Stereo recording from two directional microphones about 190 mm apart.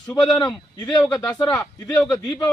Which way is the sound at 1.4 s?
20° left (ahead or behind).